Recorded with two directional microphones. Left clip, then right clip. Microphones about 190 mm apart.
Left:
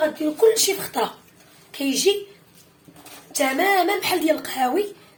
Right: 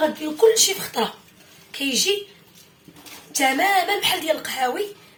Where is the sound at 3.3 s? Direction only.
50° left (ahead or behind).